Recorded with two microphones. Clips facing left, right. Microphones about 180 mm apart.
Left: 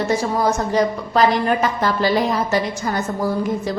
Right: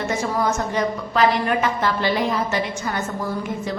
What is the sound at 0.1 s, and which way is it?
A woman's voice, 35° left (ahead or behind).